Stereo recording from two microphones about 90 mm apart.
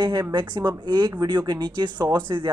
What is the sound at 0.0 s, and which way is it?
A woman's voice, 50° right (ahead or behind).